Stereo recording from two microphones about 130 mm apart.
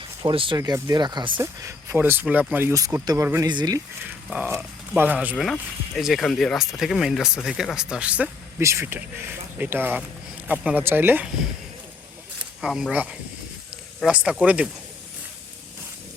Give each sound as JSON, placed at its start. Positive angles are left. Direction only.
{"t": 0.2, "sound": "speech", "side_deg": -40}
{"t": 0.6, "sound": "speech", "side_deg": -30}
{"t": 1.4, "sound": "speech", "side_deg": -20}
{"t": 2.7, "sound": "speech", "side_deg": -25}
{"t": 3.5, "sound": "speech", "side_deg": -35}
{"t": 4.3, "sound": "speech", "side_deg": -10}
{"t": 5.4, "sound": "speech", "side_deg": 0}
{"t": 12.6, "sound": "speech", "side_deg": -5}